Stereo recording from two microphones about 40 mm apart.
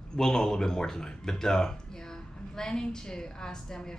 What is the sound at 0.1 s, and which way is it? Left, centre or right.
Speech, centre.